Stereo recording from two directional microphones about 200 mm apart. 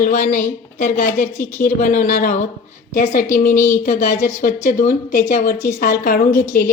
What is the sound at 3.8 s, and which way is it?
A woman's voice, 40° left (ahead or behind).